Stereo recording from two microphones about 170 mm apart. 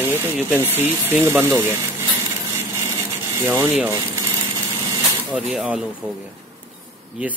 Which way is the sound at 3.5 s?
15° right (ahead or behind).